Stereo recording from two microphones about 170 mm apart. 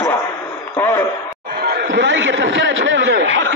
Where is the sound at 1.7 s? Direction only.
90° right.